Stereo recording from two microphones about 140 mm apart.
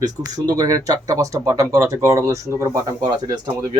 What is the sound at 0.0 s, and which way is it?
Speech, 30° right (ahead or behind).